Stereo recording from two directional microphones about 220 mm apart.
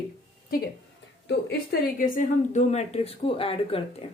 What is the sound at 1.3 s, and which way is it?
A woman's voice, 45° left (ahead or behind).